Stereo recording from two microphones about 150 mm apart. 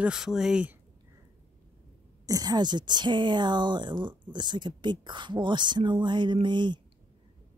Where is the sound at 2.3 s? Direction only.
25° right (ahead or behind).